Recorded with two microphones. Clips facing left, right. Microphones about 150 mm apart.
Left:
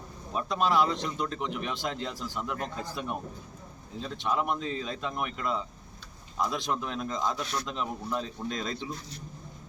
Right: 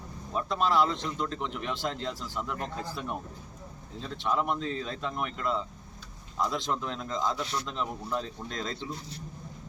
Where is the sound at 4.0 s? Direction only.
5° left (ahead or behind).